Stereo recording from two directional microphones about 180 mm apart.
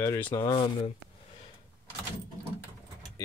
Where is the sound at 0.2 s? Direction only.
25° left (ahead or behind).